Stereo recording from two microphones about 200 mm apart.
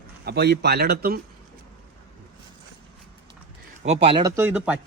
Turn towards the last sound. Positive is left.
turn(degrees=-5)  # may be behind; listen again after turning